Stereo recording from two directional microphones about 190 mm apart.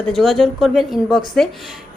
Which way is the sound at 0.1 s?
Centre (ahead or behind).